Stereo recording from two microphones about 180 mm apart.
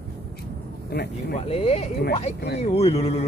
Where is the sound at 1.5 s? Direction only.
35° left (ahead or behind).